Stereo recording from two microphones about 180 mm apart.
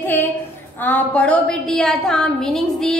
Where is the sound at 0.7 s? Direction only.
10° left (ahead or behind).